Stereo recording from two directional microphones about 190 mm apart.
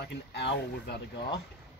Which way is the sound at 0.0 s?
60° left (ahead or behind).